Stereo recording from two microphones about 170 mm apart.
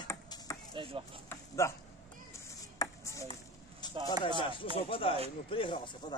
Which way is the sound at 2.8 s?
20° left (ahead or behind).